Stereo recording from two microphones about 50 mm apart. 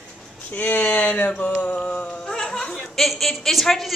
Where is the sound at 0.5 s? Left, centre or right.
Left.